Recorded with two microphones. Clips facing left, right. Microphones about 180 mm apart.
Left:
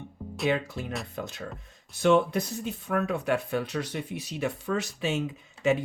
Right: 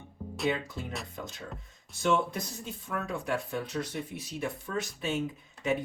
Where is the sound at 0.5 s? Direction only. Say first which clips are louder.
Left 6 dB; 70° left (ahead or behind).